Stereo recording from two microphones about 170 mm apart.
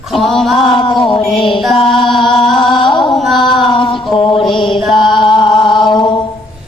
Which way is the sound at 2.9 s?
30° left (ahead or behind).